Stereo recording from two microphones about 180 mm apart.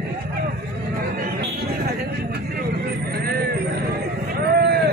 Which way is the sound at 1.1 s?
60° right (ahead or behind).